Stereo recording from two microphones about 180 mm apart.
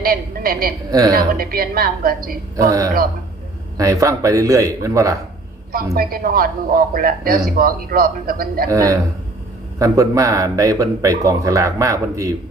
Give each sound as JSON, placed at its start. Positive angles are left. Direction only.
{"t": 0.0, "sound": "a woman's voice", "side_deg": -55}
{"t": 0.9, "sound": "a man's voice", "side_deg": -20}
{"t": 1.1, "sound": "speech", "side_deg": -55}
{"t": 2.6, "sound": "a man's voice", "side_deg": -20}
{"t": 5.7, "sound": "speech", "side_deg": -55}
{"t": 8.7, "sound": "a man's voice", "side_deg": -20}